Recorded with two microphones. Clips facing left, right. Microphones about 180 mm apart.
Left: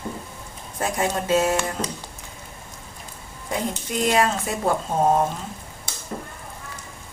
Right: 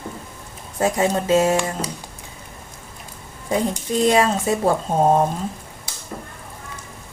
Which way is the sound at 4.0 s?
30° right (ahead or behind).